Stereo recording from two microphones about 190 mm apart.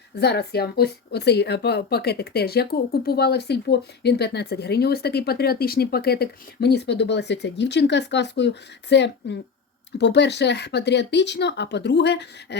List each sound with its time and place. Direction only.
0.2 s speech: 60° left (ahead or behind)